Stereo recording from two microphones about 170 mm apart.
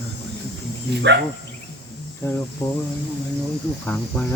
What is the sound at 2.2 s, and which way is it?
Speech, 15° left (ahead or behind).